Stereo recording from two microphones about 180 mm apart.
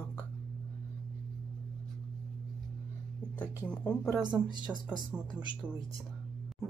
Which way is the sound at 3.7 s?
5° left (ahead or behind).